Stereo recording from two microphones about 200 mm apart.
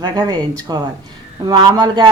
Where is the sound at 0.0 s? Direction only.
20° right (ahead or behind).